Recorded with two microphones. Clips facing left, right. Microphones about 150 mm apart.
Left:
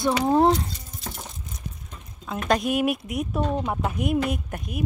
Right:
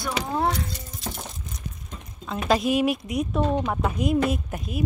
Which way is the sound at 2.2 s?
Centre (ahead or behind).